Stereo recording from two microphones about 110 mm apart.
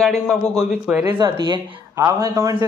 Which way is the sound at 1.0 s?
40° right (ahead or behind).